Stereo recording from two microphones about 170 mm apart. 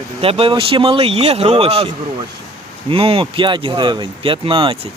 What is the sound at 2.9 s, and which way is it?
Speech, 30° right (ahead or behind).